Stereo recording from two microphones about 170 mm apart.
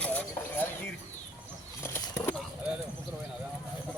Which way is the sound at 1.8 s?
15° left (ahead or behind).